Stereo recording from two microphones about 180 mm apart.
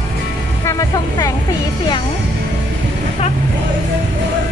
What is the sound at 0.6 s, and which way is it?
Vehicle, 20° left (ahead or behind).